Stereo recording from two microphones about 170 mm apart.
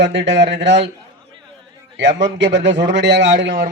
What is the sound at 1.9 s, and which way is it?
A man's voice, 90° right.